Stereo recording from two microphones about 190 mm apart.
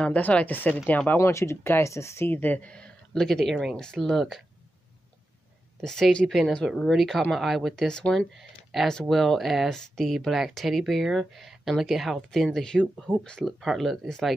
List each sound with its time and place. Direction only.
0.0 s speech: 5° left (ahead or behind)
5.8 s speech: centre (ahead or behind)